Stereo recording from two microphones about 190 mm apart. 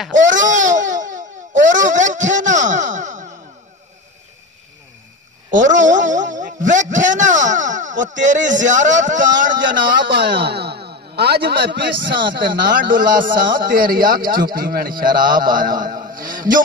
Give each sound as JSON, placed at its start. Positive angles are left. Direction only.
{"t": 0.3, "sound": "speech", "side_deg": -40}
{"t": 0.7, "sound": "a sound", "side_deg": -40}
{"t": 5.5, "sound": "a sound", "side_deg": -40}
{"t": 8.6, "sound": "speech", "side_deg": -40}
{"t": 9.9, "sound": "a man's voice", "side_deg": -65}
{"t": 12.4, "sound": "a man's voice", "side_deg": -50}